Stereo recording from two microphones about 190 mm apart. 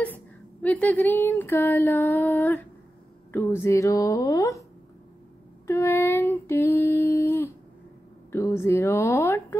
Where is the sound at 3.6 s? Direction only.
15° left (ahead or behind).